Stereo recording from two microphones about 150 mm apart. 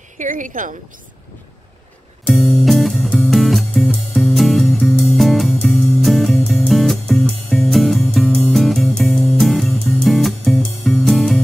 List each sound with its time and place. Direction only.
0.2 s speech: 60° right (ahead or behind)
2.2 s music: 10° left (ahead or behind)